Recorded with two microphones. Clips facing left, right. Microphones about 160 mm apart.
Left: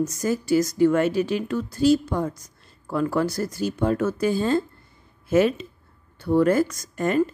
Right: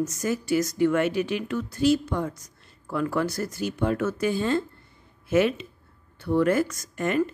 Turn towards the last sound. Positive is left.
turn(degrees=35)  # may be behind; listen again after turning